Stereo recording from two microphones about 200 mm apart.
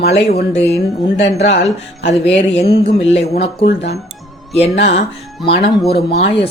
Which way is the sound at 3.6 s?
60° left (ahead or behind).